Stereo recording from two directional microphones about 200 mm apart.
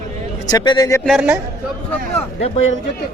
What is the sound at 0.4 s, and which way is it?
Speech, 20° left (ahead or behind).